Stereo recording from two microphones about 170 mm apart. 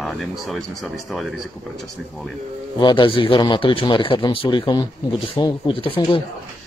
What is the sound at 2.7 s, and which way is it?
A man's voice, 25° left (ahead or behind).